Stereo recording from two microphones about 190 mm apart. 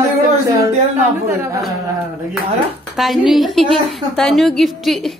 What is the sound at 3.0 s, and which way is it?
A woman's voice, centre (ahead or behind).